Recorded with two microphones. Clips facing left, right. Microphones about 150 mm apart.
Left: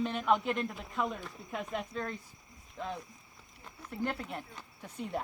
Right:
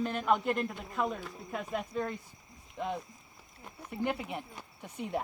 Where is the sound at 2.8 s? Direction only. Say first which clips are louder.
Right 4 dB; 20° right (ahead or behind).